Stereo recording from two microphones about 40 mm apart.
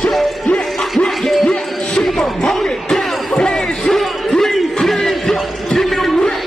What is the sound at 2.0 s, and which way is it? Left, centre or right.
Music, centre.